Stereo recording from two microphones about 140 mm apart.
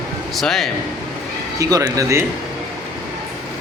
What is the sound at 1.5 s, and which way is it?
Speech, 25° right (ahead or behind).